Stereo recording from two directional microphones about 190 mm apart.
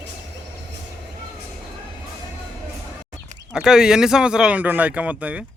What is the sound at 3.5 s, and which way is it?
Speech, 5° right (ahead or behind).